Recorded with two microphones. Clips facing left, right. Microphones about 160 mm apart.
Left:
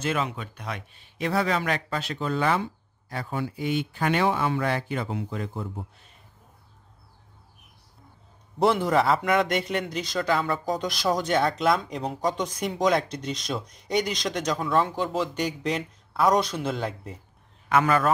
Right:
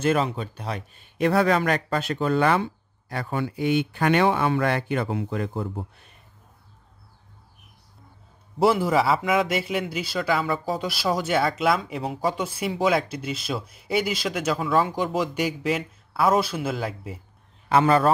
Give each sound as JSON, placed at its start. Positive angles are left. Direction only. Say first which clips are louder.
{"t": 0.0, "sound": "speech", "louder": "right 5 dB", "side_deg": -40}
{"t": 0.9, "sound": "speech", "louder": "right 5 dB", "side_deg": -50}
{"t": 8.5, "sound": "a man's voice", "louder": "right 1 dB", "side_deg": -5}
{"t": 17.6, "sound": "a man's voice", "louder": "right 3 dB", "side_deg": -30}